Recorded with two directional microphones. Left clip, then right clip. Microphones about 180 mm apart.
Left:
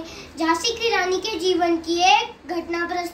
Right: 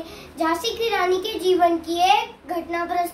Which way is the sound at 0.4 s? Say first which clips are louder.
Left 1 dB; 25° right (ahead or behind).